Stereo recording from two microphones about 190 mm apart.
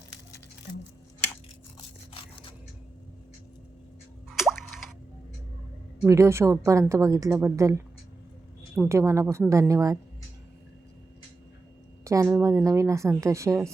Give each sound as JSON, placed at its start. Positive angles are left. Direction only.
{"t": 4.3, "sound": "plop", "side_deg": 0}
{"t": 6.0, "sound": "a woman's voice", "side_deg": -15}
{"t": 8.9, "sound": "a woman's voice", "side_deg": -15}
{"t": 12.0, "sound": "a woman's voice", "side_deg": -15}